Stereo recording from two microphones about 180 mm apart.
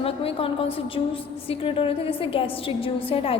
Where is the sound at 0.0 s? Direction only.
30° left (ahead or behind).